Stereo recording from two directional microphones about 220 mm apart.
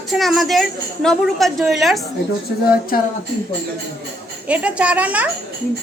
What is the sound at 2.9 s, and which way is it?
Speech, 40° left (ahead or behind).